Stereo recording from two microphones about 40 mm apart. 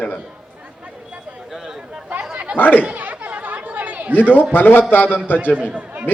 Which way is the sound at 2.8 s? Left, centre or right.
Right.